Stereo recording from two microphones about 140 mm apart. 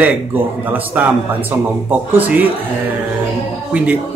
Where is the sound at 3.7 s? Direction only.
10° right (ahead or behind).